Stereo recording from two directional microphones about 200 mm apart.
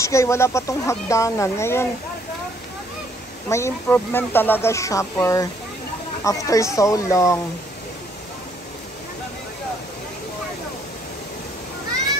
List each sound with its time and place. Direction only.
0.0 s speech: 15° left (ahead or behind)
3.4 s speech: 15° left (ahead or behind)